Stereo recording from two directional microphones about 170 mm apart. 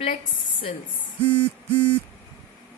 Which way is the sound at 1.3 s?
15° right (ahead or behind).